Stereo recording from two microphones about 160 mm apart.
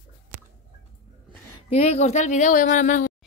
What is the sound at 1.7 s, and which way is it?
A woman's voice, 40° left (ahead or behind).